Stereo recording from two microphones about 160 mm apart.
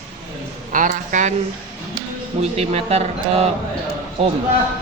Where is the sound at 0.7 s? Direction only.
55° right (ahead or behind).